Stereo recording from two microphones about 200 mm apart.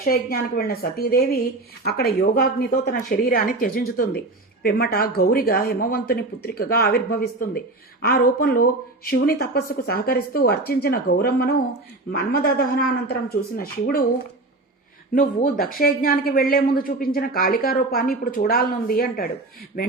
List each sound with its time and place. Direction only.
0.0 s speech: 45° left (ahead or behind)
15.1 s speech: 45° left (ahead or behind)